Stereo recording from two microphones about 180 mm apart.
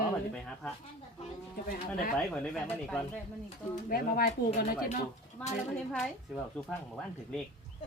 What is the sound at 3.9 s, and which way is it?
Speech, 55° left (ahead or behind).